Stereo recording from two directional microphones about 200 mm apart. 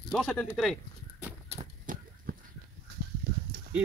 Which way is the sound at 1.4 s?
45° right (ahead or behind).